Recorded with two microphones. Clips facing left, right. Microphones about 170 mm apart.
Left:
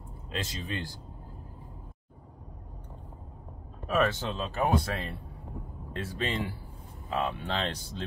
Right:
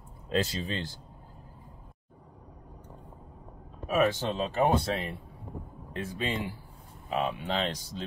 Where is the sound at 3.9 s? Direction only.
10° right (ahead or behind).